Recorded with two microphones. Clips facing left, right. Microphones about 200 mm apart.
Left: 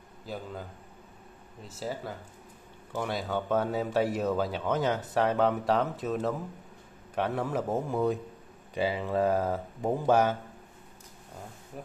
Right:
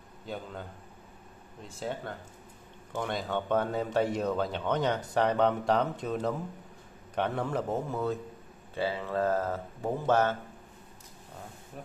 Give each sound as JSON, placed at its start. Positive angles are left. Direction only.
{"t": 0.3, "sound": "speech", "side_deg": 0}